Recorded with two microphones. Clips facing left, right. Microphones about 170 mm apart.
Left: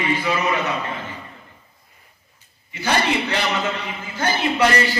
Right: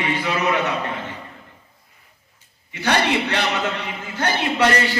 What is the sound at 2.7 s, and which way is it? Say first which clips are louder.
Speech: right 1 dB; 65° right (ahead or behind).